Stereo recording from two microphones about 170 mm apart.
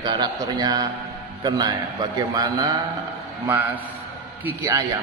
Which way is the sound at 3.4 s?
10° right (ahead or behind).